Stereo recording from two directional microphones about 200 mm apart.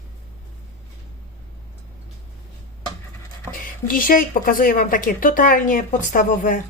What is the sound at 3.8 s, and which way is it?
A woman's voice, 45° left (ahead or behind).